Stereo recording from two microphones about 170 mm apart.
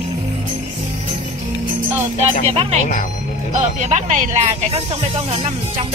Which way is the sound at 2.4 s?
40° right (ahead or behind).